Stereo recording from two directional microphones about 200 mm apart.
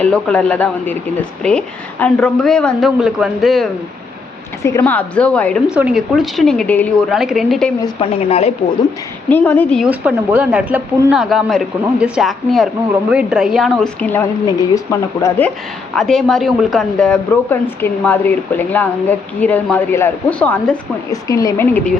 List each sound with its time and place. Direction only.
0.0 s a woman's voice: 5° left (ahead or behind)
4.6 s a woman's voice: 10° left (ahead or behind)
7.8 s a woman's voice: 25° left (ahead or behind)
9.3 s a woman's voice: 10° left (ahead or behind)
9.8 s a woman's voice: 5° right (ahead or behind)
21.1 s a woman's voice: 15° left (ahead or behind)